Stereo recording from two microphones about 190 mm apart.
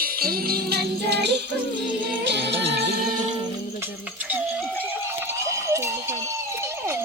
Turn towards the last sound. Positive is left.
turn(degrees=-15)  # may be behind; listen again after turning